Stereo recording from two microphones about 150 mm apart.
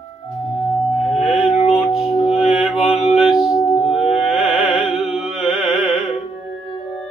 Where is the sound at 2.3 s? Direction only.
Centre (ahead or behind).